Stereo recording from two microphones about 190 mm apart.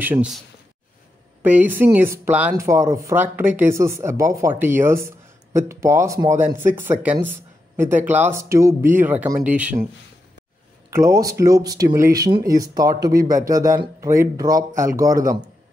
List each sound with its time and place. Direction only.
0.0 s speech: 10° right (ahead or behind)
1.4 s speech: 10° right (ahead or behind)
10.9 s speech: 15° right (ahead or behind)